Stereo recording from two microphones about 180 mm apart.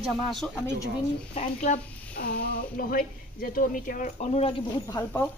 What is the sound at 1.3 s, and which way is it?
Speech, 35° left (ahead or behind).